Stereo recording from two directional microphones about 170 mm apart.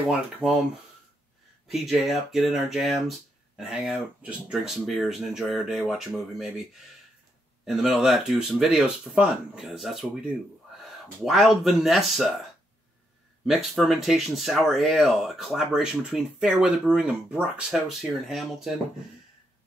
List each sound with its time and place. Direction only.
1.7 s speech: centre (ahead or behind)
11.2 s speech: centre (ahead or behind)
13.5 s speech: centre (ahead or behind)